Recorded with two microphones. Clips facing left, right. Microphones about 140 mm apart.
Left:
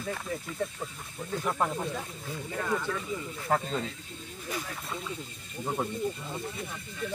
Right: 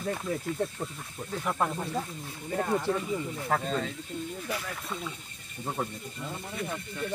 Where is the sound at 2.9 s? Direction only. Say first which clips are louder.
Right 5 dB; 30° right (ahead or behind).